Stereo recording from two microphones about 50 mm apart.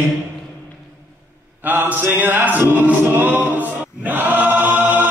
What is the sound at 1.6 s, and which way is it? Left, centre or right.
Mantra, right.